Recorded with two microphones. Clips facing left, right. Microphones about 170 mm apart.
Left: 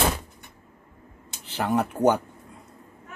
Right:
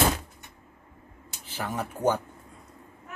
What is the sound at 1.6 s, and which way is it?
Speech, 70° left (ahead or behind).